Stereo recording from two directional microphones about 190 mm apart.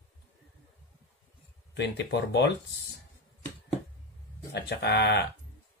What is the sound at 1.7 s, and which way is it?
Speech, 60° left (ahead or behind).